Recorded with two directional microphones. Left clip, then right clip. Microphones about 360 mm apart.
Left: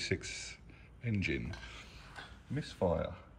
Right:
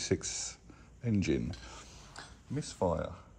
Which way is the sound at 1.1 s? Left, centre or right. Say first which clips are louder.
Right 4 dB; centre.